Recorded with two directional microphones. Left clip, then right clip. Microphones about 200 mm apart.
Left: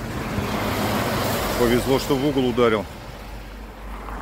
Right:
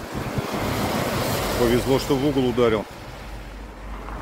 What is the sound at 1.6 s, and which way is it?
Speech, 5° right (ahead or behind).